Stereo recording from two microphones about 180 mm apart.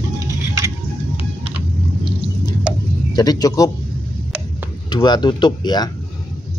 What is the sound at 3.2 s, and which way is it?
Speech, 20° left (ahead or behind).